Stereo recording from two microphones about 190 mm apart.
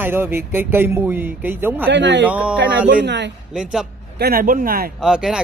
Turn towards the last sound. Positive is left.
turn(degrees=-5)  # may be behind; listen again after turning